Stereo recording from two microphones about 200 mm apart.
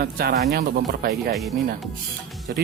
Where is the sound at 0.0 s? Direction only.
50° right (ahead or behind).